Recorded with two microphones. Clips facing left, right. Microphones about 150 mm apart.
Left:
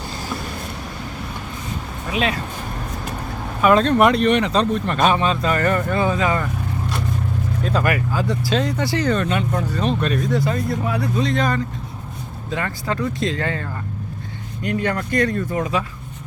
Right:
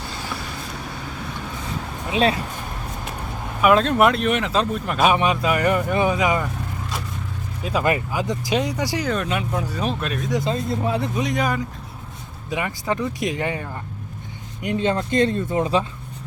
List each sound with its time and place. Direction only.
3.6 s speech: 5° right (ahead or behind)
7.6 s speech: 10° right (ahead or behind)
7.9 s speech: 20° right (ahead or behind); by 10.3 s centre (ahead or behind)
10.3 s speech: 20° right (ahead or behind)